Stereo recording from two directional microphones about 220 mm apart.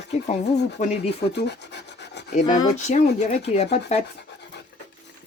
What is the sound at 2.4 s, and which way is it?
Speech, 20° left (ahead or behind).